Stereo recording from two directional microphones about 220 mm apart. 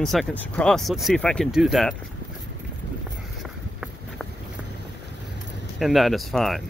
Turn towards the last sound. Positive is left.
turn(degrees=0)  # may be behind; listen again after turning